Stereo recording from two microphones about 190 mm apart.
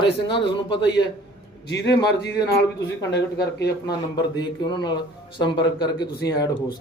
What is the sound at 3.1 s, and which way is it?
Speech, 60° left (ahead or behind).